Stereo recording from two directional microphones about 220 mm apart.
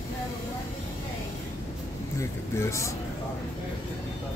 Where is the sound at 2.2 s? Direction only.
15° left (ahead or behind).